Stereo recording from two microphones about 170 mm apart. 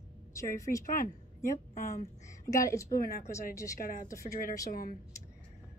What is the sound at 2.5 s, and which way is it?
Speech, 20° left (ahead or behind).